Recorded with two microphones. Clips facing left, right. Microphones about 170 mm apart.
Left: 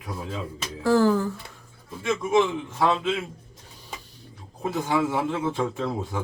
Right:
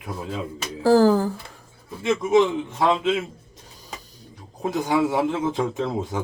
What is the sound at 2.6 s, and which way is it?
Speech, 20° right (ahead or behind).